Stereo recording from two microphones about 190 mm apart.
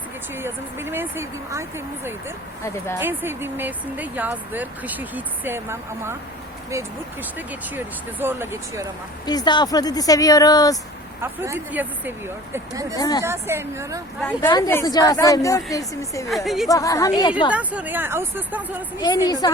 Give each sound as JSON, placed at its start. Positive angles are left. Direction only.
{"t": 0.3, "sound": "speech", "side_deg": -10}
{"t": 3.0, "sound": "speech", "side_deg": -10}
{"t": 9.2, "sound": "speech", "side_deg": 20}
{"t": 11.2, "sound": "speech", "side_deg": -15}
{"t": 13.0, "sound": "speech", "side_deg": 20}
{"t": 13.2, "sound": "speech", "side_deg": -15}
{"t": 14.2, "sound": "a woman's voice", "side_deg": 10}
{"t": 16.3, "sound": "a woman's voice", "side_deg": 0}
{"t": 16.6, "sound": "a woman's voice", "side_deg": 15}
{"t": 17.5, "sound": "speech", "side_deg": -5}
{"t": 18.9, "sound": "speech", "side_deg": 20}